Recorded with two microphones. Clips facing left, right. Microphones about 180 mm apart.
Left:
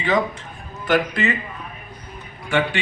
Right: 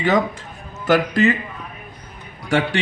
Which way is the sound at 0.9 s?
45° right (ahead or behind).